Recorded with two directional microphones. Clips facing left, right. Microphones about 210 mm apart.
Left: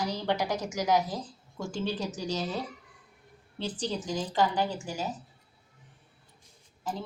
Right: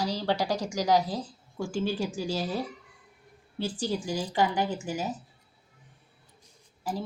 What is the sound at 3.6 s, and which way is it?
A woman's voice, 10° right (ahead or behind).